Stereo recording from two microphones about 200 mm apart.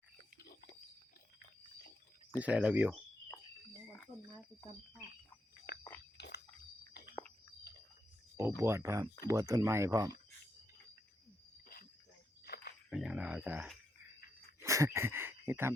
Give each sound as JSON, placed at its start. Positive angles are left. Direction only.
{"t": 2.4, "sound": "speech", "side_deg": -5}
{"t": 5.7, "sound": "biting", "side_deg": 55}
{"t": 6.1, "sound": "a sound", "side_deg": 60}
{"t": 8.4, "sound": "speech", "side_deg": -15}
{"t": 12.9, "sound": "speech", "side_deg": -5}
{"t": 14.6, "sound": "a sound", "side_deg": -15}